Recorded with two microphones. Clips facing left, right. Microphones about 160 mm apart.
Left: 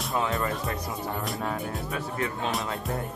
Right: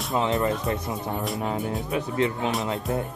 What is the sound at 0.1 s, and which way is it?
Speech, 20° right (ahead or behind).